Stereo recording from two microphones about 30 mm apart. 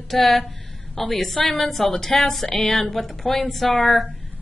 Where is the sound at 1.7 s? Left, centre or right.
Centre.